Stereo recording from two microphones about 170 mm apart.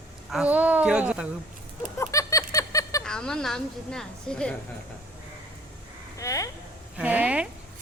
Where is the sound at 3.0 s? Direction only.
5° left (ahead or behind).